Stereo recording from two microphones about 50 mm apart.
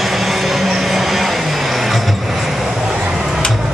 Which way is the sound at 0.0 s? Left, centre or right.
Centre.